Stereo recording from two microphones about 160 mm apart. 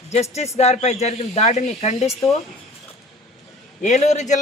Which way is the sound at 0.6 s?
40° left (ahead or behind).